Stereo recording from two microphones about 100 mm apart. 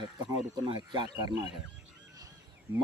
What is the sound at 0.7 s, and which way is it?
Speech, 50° right (ahead or behind).